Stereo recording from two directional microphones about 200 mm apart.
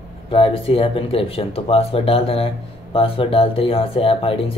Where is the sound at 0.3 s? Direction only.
30° left (ahead or behind).